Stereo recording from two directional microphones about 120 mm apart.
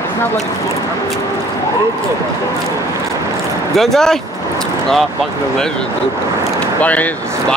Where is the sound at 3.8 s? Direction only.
5° left (ahead or behind).